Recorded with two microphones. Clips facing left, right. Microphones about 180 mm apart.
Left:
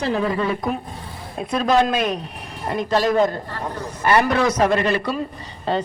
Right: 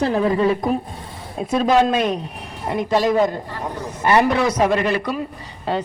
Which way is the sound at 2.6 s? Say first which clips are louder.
Right 1 dB; 15° right (ahead or behind).